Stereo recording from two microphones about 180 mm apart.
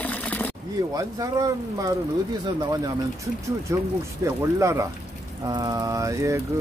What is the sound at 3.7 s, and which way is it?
Speech, 15° right (ahead or behind).